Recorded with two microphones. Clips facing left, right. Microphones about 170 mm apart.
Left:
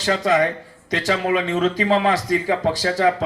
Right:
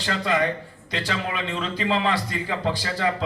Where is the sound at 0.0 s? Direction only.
45° left (ahead or behind).